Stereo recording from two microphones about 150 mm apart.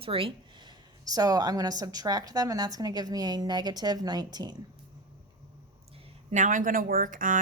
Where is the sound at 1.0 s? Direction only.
25° right (ahead or behind).